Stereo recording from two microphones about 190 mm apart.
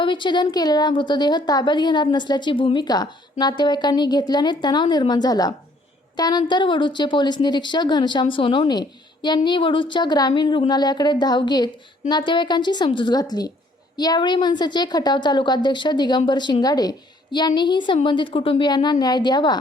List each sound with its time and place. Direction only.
0.0 s a woman's voice: 25° left (ahead or behind)